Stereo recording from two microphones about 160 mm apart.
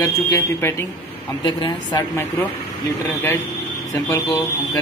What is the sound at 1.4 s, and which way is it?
Speech, 30° left (ahead or behind).